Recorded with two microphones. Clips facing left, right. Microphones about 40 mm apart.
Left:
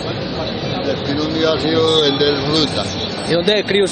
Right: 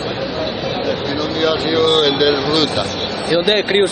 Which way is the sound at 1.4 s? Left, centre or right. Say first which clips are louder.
Even; centre.